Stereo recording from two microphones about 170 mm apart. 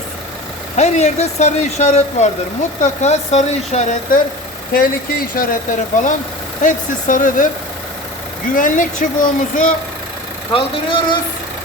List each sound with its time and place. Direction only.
0.8 s speech: 40° left (ahead or behind)
4.7 s speech: 60° left (ahead or behind)
8.5 s speech: 50° left (ahead or behind)
10.5 s speech: 30° left (ahead or behind)